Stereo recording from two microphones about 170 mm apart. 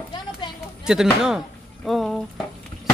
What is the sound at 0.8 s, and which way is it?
Speech, 5° right (ahead or behind).